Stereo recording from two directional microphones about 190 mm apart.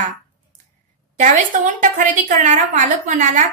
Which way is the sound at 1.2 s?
40° right (ahead or behind).